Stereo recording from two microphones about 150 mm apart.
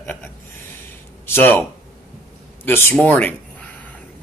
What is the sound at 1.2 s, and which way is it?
Speech, 15° left (ahead or behind).